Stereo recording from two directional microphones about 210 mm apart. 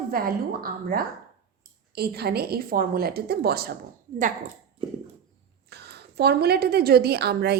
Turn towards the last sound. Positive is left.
turn(degrees=-50)  # may be behind; listen again after turning